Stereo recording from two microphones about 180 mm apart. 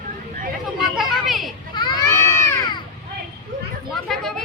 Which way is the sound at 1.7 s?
25° left (ahead or behind).